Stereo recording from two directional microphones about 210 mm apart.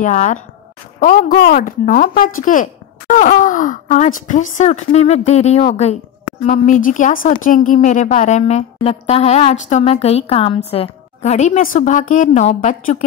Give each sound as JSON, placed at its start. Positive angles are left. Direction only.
{"t": 0.0, "sound": "speech", "side_deg": 35}